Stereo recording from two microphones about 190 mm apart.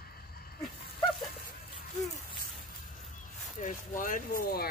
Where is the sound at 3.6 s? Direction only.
45° left (ahead or behind).